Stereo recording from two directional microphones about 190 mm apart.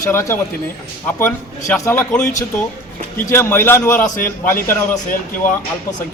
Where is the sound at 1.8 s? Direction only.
15° left (ahead or behind).